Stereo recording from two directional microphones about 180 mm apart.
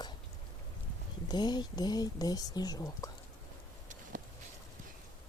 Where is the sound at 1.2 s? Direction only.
25° left (ahead or behind).